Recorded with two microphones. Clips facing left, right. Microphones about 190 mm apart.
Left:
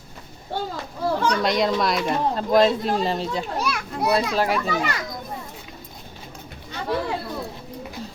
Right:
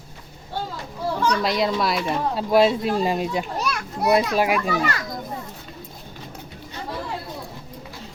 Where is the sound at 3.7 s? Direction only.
5° left (ahead or behind).